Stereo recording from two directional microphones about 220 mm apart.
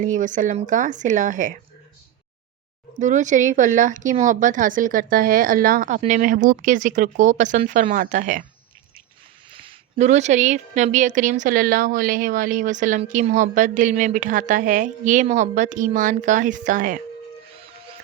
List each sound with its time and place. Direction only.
0.0 s a woman's voice: 35° right (ahead or behind)
3.0 s a woman's voice: 35° right (ahead or behind)
9.5 s a woman's voice: 25° right (ahead or behind)